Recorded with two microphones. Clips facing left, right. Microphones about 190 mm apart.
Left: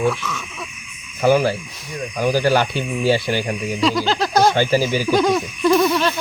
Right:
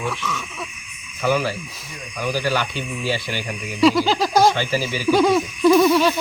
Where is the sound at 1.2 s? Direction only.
40° left (ahead or behind).